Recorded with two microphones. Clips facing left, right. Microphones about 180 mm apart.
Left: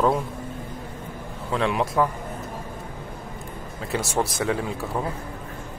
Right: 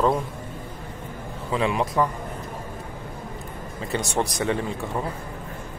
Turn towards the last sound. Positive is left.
turn(degrees=0)  # may be behind; listen again after turning